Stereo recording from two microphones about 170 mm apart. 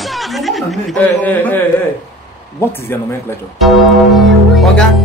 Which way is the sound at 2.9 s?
15° left (ahead or behind).